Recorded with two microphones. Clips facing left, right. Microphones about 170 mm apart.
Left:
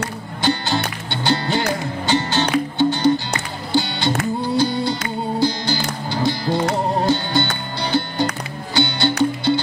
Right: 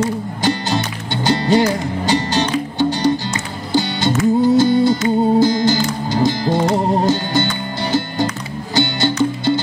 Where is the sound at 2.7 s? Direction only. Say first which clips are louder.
Even; 40° right (ahead or behind).